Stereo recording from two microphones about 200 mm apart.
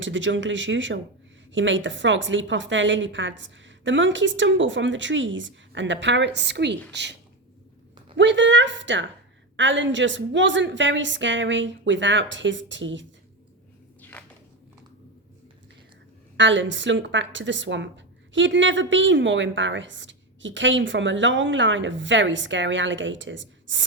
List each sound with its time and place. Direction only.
0.0 s a woman's voice: 70° right (ahead or behind)
14.0 s a sound: 5° left (ahead or behind)
16.4 s a woman's voice: 65° right (ahead or behind)